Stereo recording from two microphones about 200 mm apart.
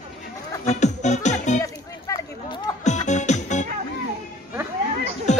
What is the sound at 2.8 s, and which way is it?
Music, 35° left (ahead or behind).